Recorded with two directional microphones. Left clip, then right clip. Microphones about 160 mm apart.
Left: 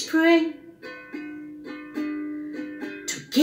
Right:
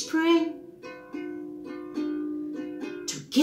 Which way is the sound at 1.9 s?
20° left (ahead or behind).